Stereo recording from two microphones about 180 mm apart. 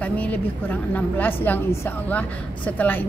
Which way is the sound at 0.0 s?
10° left (ahead or behind).